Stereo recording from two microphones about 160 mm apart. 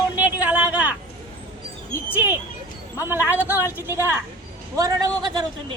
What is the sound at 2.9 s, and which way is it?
A man's voice, 15° right (ahead or behind).